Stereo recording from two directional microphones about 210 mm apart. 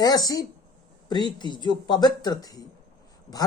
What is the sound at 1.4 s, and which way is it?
A woman's voice, 20° left (ahead or behind).